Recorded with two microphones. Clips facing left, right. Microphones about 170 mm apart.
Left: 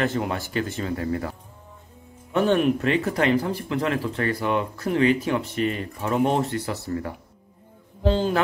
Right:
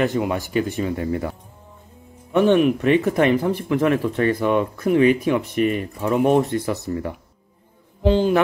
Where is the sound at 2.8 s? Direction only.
20° right (ahead or behind).